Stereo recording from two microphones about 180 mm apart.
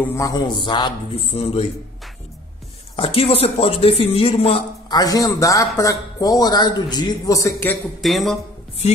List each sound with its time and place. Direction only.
0.0 s a sound: 15° left (ahead or behind)
0.7 s speech: 25° left (ahead or behind)
3.0 s speech: 30° left (ahead or behind); by 7.8 s 15° left (ahead or behind)
8.0 s speech: centre (ahead or behind)